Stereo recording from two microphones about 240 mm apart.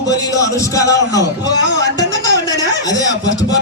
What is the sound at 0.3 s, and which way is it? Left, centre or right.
A man's voice, centre.